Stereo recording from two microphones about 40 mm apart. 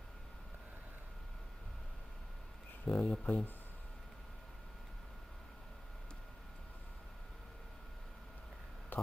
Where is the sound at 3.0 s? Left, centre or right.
Left.